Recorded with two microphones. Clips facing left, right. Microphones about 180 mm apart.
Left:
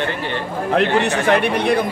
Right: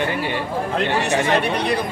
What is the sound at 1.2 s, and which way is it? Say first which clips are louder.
Speech: left 3 dB; 55° left (ahead or behind).